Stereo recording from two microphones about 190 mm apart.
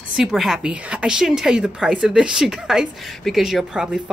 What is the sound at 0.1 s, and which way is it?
A woman's voice, centre (ahead or behind).